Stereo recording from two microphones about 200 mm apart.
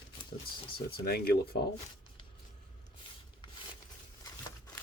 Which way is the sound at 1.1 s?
50° left (ahead or behind).